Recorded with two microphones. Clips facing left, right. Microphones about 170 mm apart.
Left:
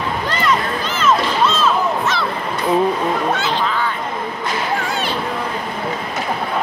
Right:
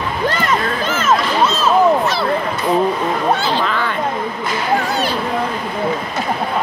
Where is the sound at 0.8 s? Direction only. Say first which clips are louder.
Even; 45° right (ahead or behind).